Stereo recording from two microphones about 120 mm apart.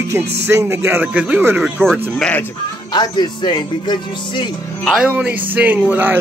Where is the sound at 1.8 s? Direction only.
5° left (ahead or behind).